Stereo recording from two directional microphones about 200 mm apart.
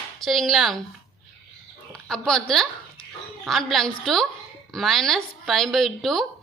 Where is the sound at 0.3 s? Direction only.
Centre (ahead or behind).